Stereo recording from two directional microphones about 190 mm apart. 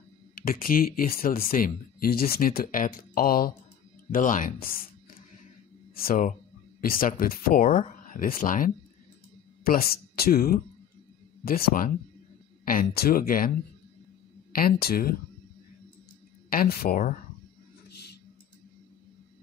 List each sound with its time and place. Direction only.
0.4 s speech: 50° left (ahead or behind)
5.9 s speech: 45° left (ahead or behind)
14.5 s speech: 50° left (ahead or behind)
16.4 s speech: 50° left (ahead or behind)